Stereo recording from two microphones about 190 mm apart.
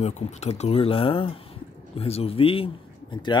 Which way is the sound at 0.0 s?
35° left (ahead or behind).